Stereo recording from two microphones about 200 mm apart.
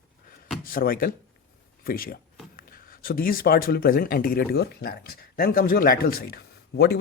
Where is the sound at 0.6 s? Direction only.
45° left (ahead or behind).